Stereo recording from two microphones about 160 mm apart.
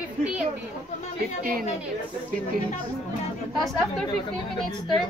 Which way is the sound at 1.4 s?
65° right (ahead or behind).